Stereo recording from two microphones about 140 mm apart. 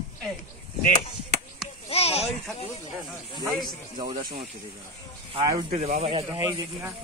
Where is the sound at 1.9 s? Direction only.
45° left (ahead or behind).